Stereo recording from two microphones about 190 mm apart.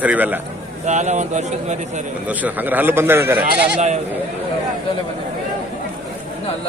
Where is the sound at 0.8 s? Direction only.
35° right (ahead or behind).